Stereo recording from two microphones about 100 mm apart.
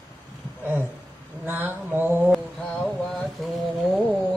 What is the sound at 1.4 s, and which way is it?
Mantra, 20° right (ahead or behind).